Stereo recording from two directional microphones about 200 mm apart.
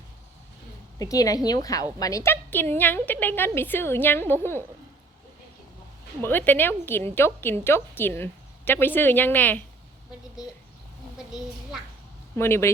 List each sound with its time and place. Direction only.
0.9 s a woman's voice: 15° left (ahead or behind)
6.2 s a woman's voice: 10° left (ahead or behind)
12.4 s a woman's voice: 10° left (ahead or behind)